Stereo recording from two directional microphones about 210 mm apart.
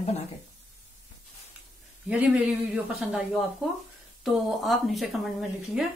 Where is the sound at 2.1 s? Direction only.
5° right (ahead or behind).